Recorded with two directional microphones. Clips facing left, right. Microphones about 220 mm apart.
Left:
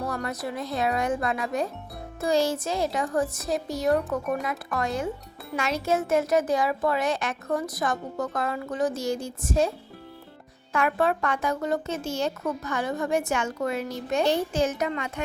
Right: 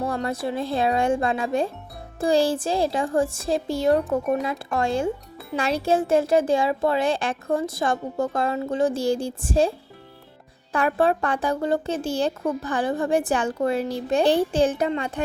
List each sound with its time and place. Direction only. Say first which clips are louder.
0.0 s a child's voice: right 5 dB; 25° right (ahead or behind)